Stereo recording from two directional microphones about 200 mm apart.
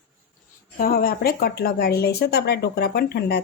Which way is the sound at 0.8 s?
50° left (ahead or behind).